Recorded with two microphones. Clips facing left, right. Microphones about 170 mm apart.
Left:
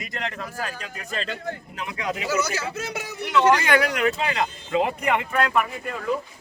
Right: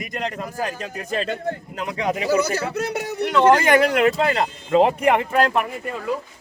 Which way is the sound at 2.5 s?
65° right (ahead or behind).